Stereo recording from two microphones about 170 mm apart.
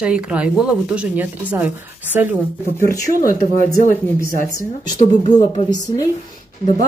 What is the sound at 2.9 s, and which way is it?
Speech, 20° left (ahead or behind).